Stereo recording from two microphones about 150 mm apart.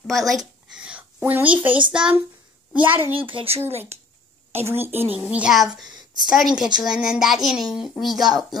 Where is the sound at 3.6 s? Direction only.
15° right (ahead or behind).